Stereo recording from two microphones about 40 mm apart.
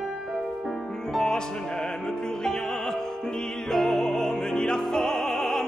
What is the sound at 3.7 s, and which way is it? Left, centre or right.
Opera, centre.